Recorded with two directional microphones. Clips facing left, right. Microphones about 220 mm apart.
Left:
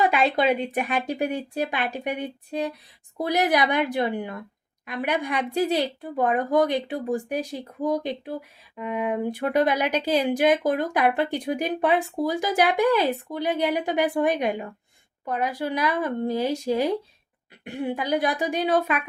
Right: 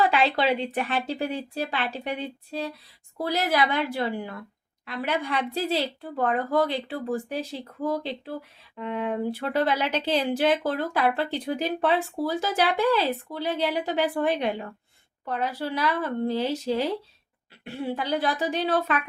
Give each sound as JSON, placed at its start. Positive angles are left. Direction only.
{"t": 0.0, "sound": "speech", "side_deg": 15}